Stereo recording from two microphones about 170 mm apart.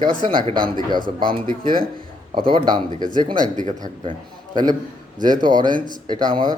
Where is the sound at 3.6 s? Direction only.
45° right (ahead or behind).